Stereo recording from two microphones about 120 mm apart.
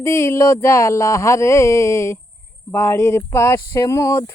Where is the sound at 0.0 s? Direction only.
20° left (ahead or behind).